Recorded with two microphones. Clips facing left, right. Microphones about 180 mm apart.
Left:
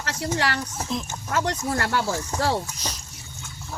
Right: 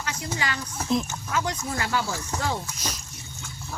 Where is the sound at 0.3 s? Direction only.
70° left (ahead or behind).